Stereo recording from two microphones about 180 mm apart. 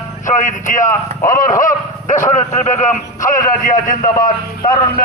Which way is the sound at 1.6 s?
45° left (ahead or behind).